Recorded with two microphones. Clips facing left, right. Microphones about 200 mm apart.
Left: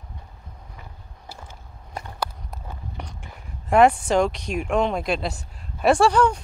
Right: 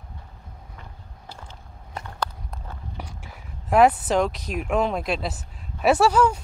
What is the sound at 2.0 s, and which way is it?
Walk, 10° left (ahead or behind).